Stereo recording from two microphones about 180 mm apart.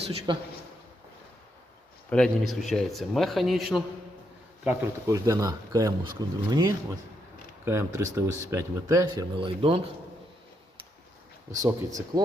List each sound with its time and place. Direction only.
0.0 s a man's voice: 35° right (ahead or behind)
2.0 s a man's voice: 5° left (ahead or behind); by 9.8 s 30° right (ahead or behind)
12.1 s speech: 20° right (ahead or behind)